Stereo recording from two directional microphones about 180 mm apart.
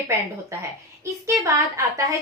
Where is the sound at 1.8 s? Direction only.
15° right (ahead or behind).